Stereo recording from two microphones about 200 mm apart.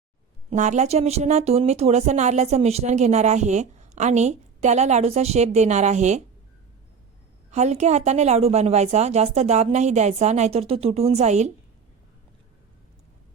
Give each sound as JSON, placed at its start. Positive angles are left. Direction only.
{"t": 0.5, "sound": "speech", "side_deg": -35}
{"t": 7.5, "sound": "speech", "side_deg": -35}